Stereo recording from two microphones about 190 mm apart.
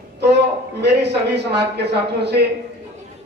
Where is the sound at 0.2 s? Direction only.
60° right (ahead or behind).